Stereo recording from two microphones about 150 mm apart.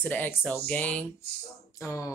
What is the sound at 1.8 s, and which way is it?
Speech, 20° left (ahead or behind).